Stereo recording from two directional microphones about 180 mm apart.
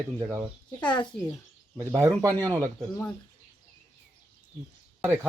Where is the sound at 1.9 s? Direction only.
20° right (ahead or behind).